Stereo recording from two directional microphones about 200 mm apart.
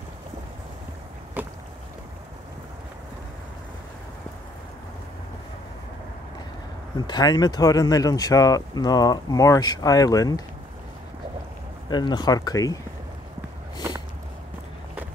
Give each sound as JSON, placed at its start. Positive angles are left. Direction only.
{"t": 1.4, "sound": "boat", "side_deg": -10}
{"t": 7.1, "sound": "speech", "side_deg": 20}
{"t": 11.9, "sound": "speech", "side_deg": 20}